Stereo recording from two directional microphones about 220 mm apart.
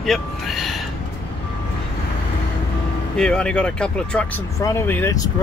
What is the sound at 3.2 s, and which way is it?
Speech, 5° left (ahead or behind).